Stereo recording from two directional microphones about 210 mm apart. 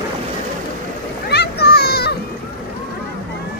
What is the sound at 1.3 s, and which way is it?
Children playing, 50° left (ahead or behind).